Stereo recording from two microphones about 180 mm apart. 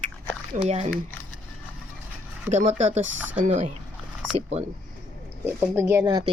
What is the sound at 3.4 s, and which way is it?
Speech, 40° right (ahead or behind).